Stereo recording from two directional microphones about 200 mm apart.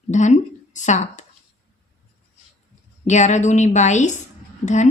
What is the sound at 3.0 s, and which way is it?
Speech, 35° left (ahead or behind).